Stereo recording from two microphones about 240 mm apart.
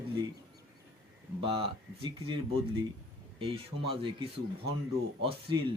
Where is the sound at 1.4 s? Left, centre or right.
Right.